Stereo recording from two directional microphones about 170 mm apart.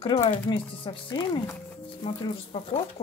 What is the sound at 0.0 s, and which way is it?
Speech, 30° left (ahead or behind).